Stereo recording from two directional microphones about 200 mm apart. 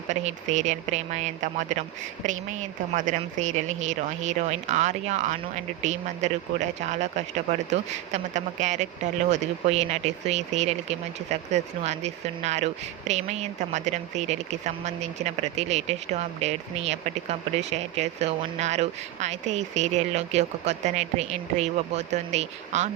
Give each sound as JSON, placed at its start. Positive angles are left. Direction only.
{"t": 0.1, "sound": "speech", "side_deg": -35}